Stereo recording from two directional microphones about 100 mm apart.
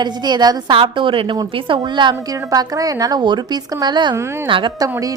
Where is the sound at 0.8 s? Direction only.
60° right (ahead or behind).